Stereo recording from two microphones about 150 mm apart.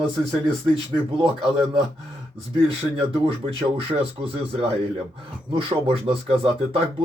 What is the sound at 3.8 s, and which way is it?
Speech, 40° right (ahead or behind).